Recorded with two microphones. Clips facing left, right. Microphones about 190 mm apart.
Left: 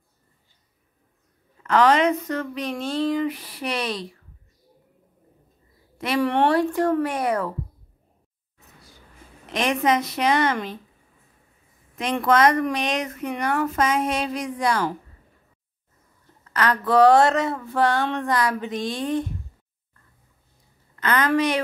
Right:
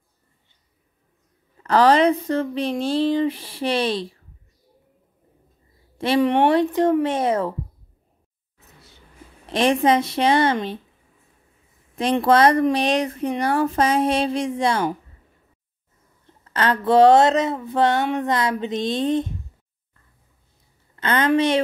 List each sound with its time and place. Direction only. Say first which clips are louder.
1.6 s speech: right 3 dB; 35° right (ahead or behind)
5.9 s speech: right 3 dB; 25° right (ahead or behind)
9.5 s speech: right 4 dB; 30° right (ahead or behind)
11.9 s speech: right 3 dB; 30° right (ahead or behind)
16.5 s speech: right 2 dB; 25° right (ahead or behind)
20.9 s speech: right 2 dB; 25° right (ahead or behind)